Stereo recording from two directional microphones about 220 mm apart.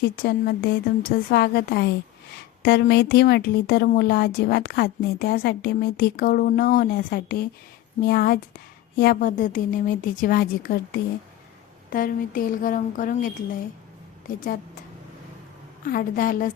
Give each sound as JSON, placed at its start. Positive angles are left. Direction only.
{"t": 0.0, "sound": "a woman's voice", "side_deg": 45}
{"t": 15.8, "sound": "a woman's voice", "side_deg": 40}